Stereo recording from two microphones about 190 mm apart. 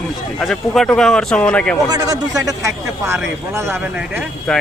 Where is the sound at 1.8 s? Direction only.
20° right (ahead or behind).